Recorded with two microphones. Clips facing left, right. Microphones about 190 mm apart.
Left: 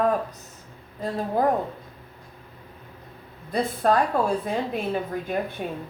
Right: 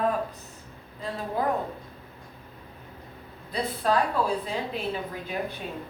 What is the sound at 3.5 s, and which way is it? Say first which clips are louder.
A woman's voice: left 4 dB; 50° left (ahead or behind).